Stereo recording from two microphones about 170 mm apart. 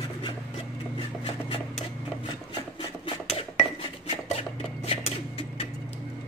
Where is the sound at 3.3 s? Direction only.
35° left (ahead or behind).